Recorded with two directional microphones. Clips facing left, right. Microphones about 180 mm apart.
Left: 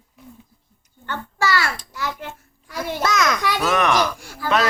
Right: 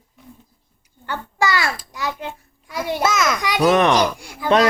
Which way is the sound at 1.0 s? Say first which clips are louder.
Right 2 dB; 15° right (ahead or behind).